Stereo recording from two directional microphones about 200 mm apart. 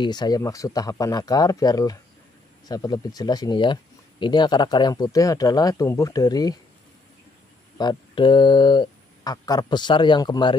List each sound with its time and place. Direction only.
0.0 s speech: 20° left (ahead or behind)
7.7 s speech: 20° left (ahead or behind)